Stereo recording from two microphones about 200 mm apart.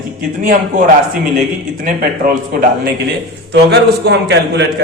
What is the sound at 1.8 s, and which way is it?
Speech, 45° right (ahead or behind).